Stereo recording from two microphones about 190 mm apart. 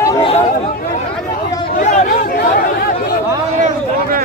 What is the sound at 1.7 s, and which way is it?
Chatter, 40° left (ahead or behind).